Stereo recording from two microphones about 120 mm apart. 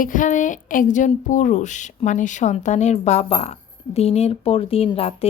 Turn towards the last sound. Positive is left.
turn(degrees=55)  # may be behind; listen again after turning